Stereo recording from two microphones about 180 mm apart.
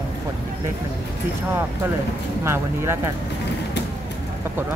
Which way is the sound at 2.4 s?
15° right (ahead or behind).